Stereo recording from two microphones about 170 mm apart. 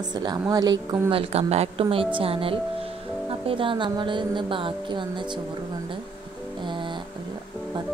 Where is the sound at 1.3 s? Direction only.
40° right (ahead or behind).